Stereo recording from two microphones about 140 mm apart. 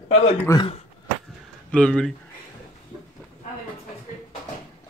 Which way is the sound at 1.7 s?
10° left (ahead or behind).